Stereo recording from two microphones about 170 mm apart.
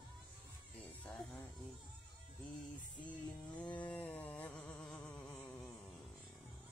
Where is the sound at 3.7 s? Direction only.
10° left (ahead or behind).